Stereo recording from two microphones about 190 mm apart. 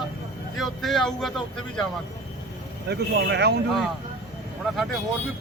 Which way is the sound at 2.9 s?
60° right (ahead or behind).